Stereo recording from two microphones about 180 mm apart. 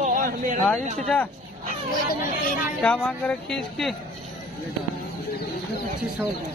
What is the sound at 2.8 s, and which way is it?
Speech, 5° left (ahead or behind).